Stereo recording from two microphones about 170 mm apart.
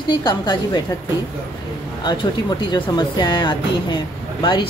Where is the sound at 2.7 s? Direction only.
25° left (ahead or behind).